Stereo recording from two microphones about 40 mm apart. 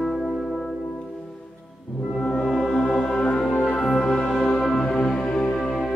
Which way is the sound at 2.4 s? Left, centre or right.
Centre.